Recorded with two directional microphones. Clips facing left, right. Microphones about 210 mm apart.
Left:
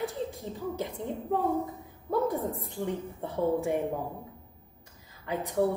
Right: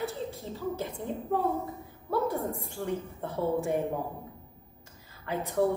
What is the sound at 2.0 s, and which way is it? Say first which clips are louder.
A woman's voice: left 1 dB; 15° left (ahead or behind).